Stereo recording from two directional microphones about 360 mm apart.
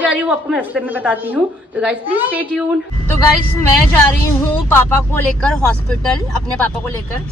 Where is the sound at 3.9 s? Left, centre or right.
Centre.